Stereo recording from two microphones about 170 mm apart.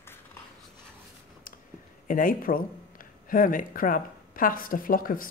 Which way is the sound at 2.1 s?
55° left (ahead or behind).